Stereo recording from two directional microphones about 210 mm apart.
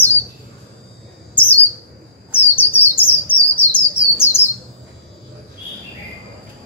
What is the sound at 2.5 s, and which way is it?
Chirp, 10° left (ahead or behind).